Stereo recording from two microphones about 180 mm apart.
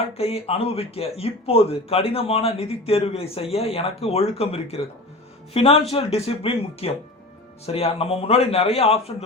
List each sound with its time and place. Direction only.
0.1 s speech: 35° left (ahead or behind)